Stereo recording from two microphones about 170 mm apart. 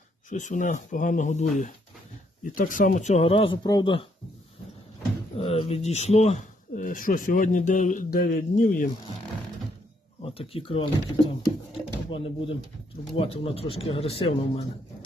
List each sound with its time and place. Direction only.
0.3 s speech: 50° left (ahead or behind); by 4.0 s 25° left (ahead or behind)
5.4 s speech: 35° left (ahead or behind); by 8.9 s 55° left (ahead or behind)
10.2 s speech: 35° left (ahead or behind)
12.1 s speech: 30° left (ahead or behind)